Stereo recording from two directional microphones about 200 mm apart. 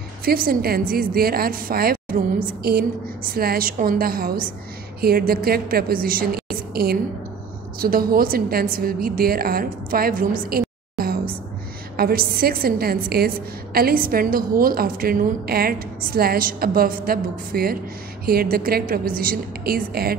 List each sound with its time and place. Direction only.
0.2 s a woman's voice: 50° right (ahead or behind)